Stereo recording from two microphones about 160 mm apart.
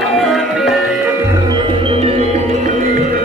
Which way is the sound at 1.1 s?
20° right (ahead or behind).